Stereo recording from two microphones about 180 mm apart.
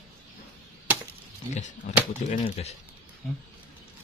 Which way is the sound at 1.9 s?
45° left (ahead or behind).